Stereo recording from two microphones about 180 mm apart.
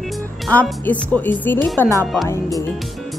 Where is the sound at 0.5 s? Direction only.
10° left (ahead or behind).